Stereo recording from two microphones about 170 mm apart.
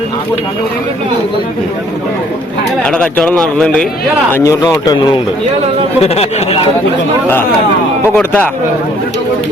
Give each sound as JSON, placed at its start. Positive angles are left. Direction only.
{"t": 2.8, "sound": "speech", "side_deg": 5}
{"t": 4.3, "sound": "speech", "side_deg": 15}
{"t": 6.0, "sound": "speech", "side_deg": 35}
{"t": 8.1, "sound": "speech", "side_deg": 10}